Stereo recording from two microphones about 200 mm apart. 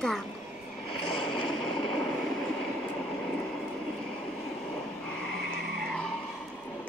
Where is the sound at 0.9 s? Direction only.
25° left (ahead or behind).